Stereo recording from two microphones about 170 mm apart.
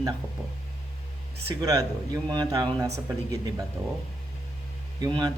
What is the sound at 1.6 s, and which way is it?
Speech, 20° right (ahead or behind).